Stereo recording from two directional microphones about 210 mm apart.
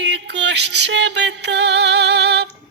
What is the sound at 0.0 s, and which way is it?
Music, 55° right (ahead or behind).